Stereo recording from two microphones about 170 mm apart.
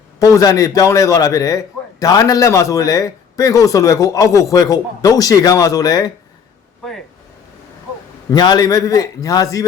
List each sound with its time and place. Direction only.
0.2 s a man's voice: 20° left (ahead or behind)
8.3 s a man's voice: 25° left (ahead or behind)